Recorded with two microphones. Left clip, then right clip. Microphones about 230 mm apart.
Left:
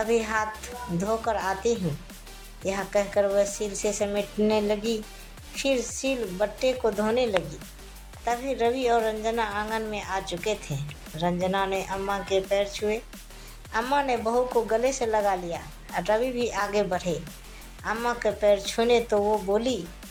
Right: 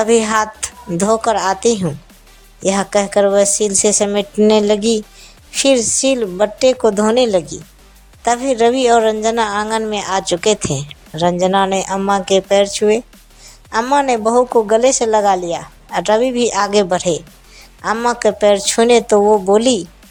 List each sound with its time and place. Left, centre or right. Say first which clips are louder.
0.0 s a woman's voice: right 12 dB; right